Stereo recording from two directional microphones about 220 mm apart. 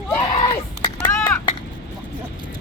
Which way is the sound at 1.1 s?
15° left (ahead or behind).